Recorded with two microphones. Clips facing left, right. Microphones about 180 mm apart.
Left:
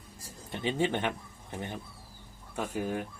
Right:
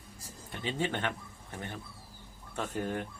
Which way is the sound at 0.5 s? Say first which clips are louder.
Left 4 dB; 20° left (ahead or behind).